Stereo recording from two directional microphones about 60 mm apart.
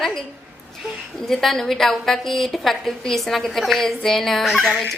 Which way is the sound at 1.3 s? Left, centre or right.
Centre.